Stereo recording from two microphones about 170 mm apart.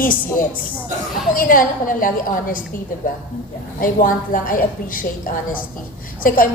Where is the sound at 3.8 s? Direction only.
55° left (ahead or behind).